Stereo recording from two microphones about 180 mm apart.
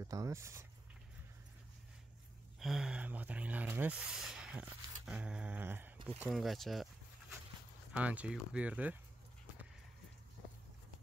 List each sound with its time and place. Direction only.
0.0 s speech: 15° right (ahead or behind)
2.6 s speech: centre (ahead or behind)